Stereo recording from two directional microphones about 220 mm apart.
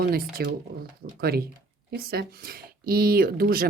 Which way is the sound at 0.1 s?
45° right (ahead or behind).